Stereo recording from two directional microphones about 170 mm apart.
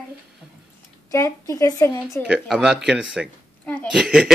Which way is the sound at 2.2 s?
5° right (ahead or behind).